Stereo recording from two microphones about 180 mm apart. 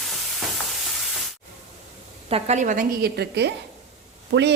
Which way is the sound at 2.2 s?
35° right (ahead or behind).